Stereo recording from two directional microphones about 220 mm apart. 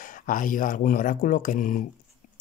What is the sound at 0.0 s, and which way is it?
Speech, 40° left (ahead or behind).